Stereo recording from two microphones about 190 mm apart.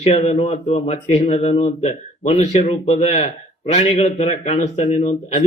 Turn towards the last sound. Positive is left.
turn(degrees=35)  # may be behind; listen again after turning